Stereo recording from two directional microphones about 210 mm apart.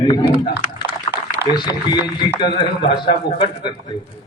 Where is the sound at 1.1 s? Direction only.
30° left (ahead or behind).